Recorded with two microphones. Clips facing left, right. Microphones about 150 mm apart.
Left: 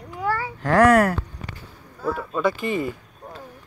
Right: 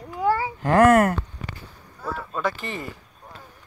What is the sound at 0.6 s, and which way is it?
Speech, 5° right (ahead or behind).